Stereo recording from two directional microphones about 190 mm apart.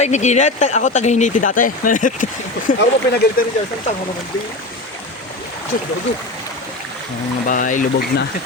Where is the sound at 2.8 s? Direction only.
55° left (ahead or behind).